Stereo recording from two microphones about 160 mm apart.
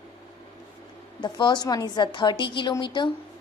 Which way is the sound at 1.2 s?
30° left (ahead or behind).